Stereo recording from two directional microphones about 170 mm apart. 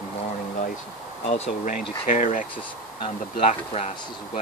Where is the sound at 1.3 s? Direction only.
45° left (ahead or behind).